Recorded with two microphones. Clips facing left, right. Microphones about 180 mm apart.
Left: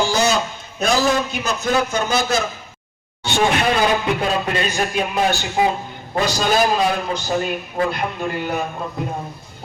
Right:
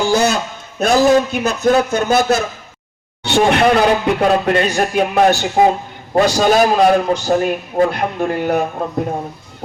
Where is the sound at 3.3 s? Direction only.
65° right (ahead or behind).